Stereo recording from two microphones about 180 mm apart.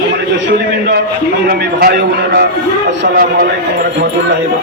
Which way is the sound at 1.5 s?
55° right (ahead or behind).